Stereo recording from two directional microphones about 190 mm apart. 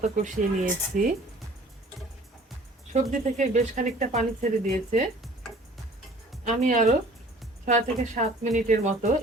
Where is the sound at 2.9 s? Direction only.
40° right (ahead or behind).